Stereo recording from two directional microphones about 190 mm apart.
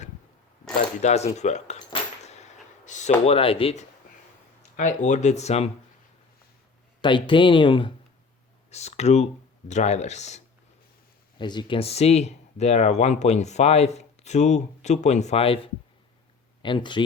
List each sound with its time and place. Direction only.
1.0 s a sound: 35° left (ahead or behind)
3.2 s speech: 30° left (ahead or behind)
7.0 s speech: 25° left (ahead or behind)
11.3 s speech: 25° left (ahead or behind)